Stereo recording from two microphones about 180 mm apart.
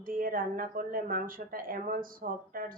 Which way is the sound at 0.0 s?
50° right (ahead or behind).